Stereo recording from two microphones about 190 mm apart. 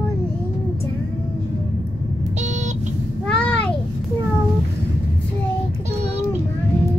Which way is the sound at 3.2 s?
5° left (ahead or behind).